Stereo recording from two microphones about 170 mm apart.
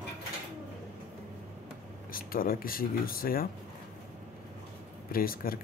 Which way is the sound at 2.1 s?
55° left (ahead or behind).